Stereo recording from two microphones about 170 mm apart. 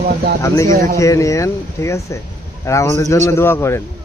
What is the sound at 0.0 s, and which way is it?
Speech, 65° right (ahead or behind).